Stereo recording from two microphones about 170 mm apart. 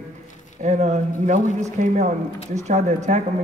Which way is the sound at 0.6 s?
45° right (ahead or behind).